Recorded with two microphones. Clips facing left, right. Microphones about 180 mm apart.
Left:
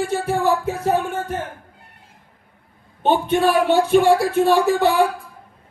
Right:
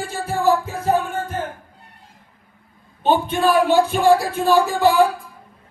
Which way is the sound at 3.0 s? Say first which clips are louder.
Left 1 dB; 70° left (ahead or behind).